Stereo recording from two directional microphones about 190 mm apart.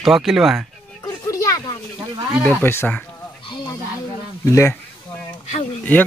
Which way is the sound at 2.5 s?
10° left (ahead or behind).